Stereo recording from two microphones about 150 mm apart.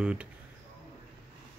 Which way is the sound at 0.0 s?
5° right (ahead or behind).